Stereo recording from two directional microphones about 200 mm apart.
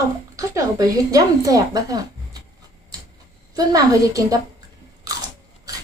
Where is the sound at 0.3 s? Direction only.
15° right (ahead or behind).